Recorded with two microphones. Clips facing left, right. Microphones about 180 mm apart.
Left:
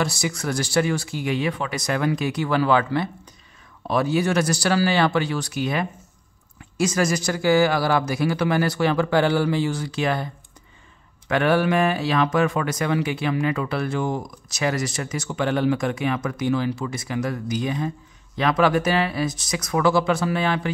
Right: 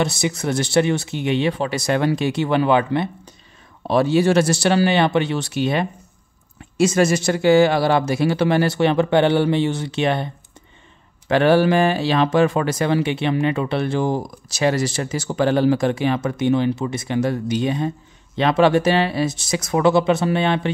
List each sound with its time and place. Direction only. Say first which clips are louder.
0.0 s speech: right 4 dB; 25° right (ahead or behind)